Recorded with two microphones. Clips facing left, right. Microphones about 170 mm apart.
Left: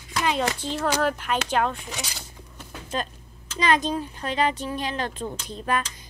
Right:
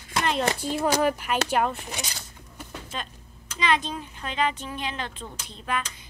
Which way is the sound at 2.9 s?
40° left (ahead or behind).